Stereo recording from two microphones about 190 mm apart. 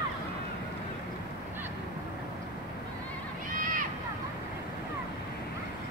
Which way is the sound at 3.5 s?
45° right (ahead or behind).